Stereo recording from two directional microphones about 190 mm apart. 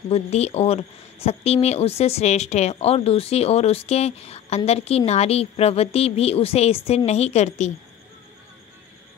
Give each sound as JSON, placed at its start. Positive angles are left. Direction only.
{"t": 0.1, "sound": "speech", "side_deg": 35}